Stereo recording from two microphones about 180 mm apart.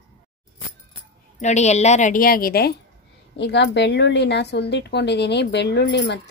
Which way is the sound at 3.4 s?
70° left (ahead or behind).